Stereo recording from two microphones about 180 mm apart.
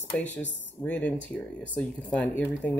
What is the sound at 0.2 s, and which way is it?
Speech, 80° left.